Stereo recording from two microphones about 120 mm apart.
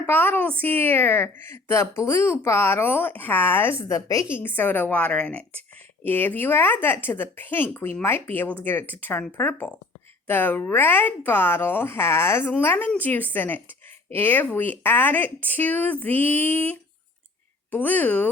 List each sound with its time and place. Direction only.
0.0 s speech: 15° left (ahead or behind)